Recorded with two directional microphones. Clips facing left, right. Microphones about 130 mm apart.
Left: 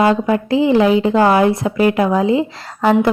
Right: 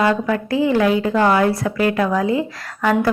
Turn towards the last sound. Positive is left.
turn(degrees=25)  # may be behind; listen again after turning